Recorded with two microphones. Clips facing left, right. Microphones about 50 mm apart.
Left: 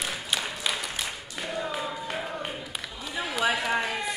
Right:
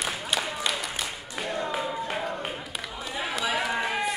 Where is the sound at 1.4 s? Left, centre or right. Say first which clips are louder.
Right 1 dB; centre.